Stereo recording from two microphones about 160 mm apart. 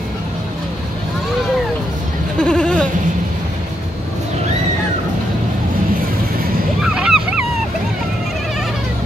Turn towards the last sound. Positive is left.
turn(degrees=-5)  # may be behind; listen again after turning